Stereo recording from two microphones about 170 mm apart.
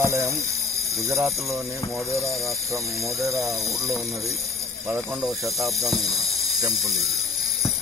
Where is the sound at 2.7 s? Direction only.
20° right (ahead or behind).